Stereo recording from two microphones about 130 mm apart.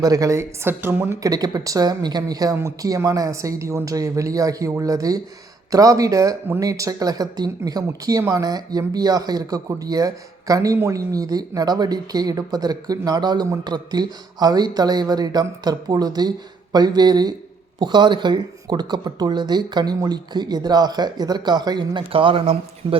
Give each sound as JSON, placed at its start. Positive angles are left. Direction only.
{"t": 0.0, "sound": "speech", "side_deg": -25}